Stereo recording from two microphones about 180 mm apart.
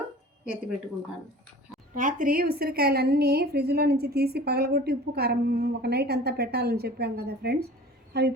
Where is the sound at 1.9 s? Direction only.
45° right (ahead or behind).